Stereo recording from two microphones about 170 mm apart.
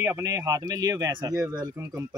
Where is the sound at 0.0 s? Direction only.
15° right (ahead or behind).